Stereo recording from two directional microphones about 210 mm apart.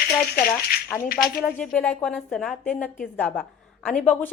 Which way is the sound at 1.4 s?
5° left (ahead or behind).